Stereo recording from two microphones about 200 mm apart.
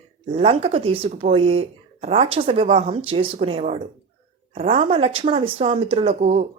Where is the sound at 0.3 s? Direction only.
30° right (ahead or behind).